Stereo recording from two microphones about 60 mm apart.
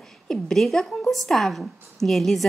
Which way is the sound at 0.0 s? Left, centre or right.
Centre.